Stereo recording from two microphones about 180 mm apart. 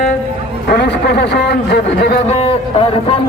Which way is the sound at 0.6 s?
60° left (ahead or behind).